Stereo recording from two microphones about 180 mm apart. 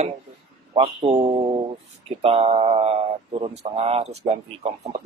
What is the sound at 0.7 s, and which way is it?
Speech, 30° right (ahead or behind).